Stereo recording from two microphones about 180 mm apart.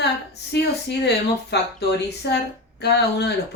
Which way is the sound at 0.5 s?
70° left (ahead or behind).